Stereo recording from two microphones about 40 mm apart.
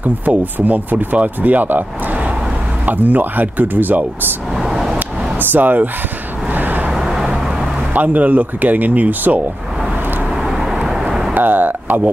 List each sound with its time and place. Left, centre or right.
0.0 s speech: right
4.6 s vehicle: centre
4.9 s a sound: right
6.5 s vehicle: right
6.9 s vehicle: centre
7.9 s speech: right
10.3 s vehicle: centre
11.3 s a sound: right